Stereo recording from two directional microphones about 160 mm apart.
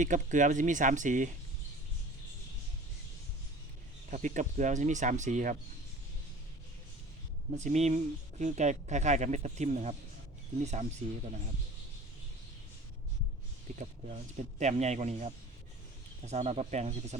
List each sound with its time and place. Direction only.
0.0 s speech: 50° right (ahead or behind)
4.1 s speech: 50° right (ahead or behind)
7.5 s speech: 45° right (ahead or behind)
13.7 s speech: 45° right (ahead or behind)